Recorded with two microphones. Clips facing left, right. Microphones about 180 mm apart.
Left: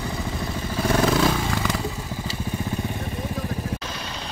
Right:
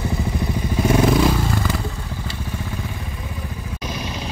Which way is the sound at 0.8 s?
10° right (ahead or behind).